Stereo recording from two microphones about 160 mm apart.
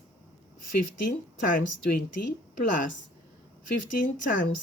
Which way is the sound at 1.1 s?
60° left (ahead or behind).